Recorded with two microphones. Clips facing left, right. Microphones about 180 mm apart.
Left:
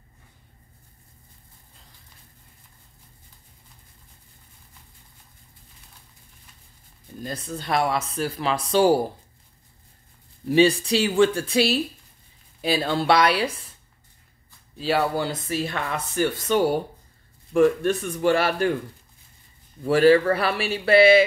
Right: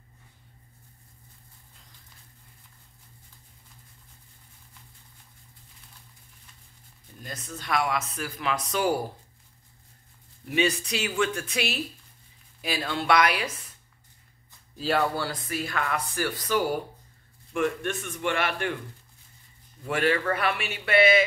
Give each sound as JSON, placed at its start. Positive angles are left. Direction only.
{"t": 7.2, "sound": "speech", "side_deg": 30}
{"t": 10.5, "sound": "speech", "side_deg": 30}
{"t": 14.8, "sound": "speech", "side_deg": 0}
{"t": 15.1, "sound": "speech", "side_deg": 20}
{"t": 19.9, "sound": "speech", "side_deg": 35}